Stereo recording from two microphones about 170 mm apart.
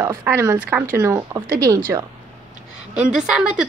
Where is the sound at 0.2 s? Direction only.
15° right (ahead or behind).